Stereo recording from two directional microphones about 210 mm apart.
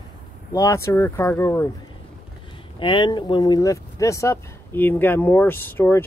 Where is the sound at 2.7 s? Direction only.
25° left (ahead or behind).